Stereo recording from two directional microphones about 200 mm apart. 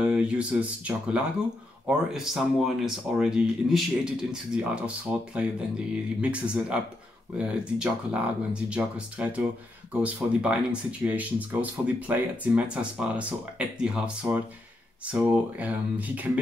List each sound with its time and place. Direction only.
0.0 s speech: 5° right (ahead or behind)